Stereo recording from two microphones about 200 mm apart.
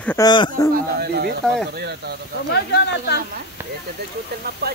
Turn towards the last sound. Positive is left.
turn(degrees=60)  # may be behind; listen again after turning